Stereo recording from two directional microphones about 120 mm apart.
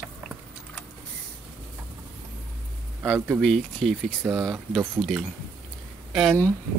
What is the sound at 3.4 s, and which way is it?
Speech, 5° left (ahead or behind).